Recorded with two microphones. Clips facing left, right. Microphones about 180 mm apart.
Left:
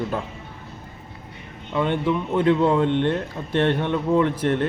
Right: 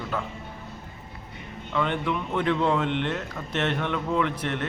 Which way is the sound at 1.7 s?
20° left (ahead or behind).